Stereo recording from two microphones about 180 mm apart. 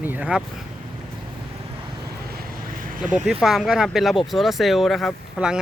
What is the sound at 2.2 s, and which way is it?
Vehicle, 55° right (ahead or behind).